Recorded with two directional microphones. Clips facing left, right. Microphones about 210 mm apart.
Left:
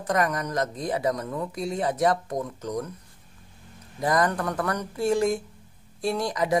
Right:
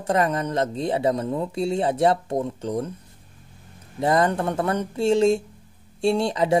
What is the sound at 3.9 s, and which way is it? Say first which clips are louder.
Speech: right 3 dB; 25° right (ahead or behind).